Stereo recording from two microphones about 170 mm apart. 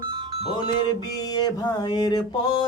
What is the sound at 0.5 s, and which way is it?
Music, 25° left (ahead or behind).